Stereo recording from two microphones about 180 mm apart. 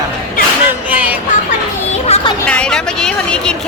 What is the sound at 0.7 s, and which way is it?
Music, 10° right (ahead or behind).